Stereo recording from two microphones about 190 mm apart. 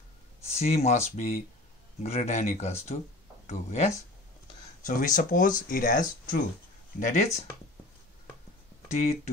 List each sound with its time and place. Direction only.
0.5 s speech: 35° left (ahead or behind)
8.9 s speech: 35° left (ahead or behind)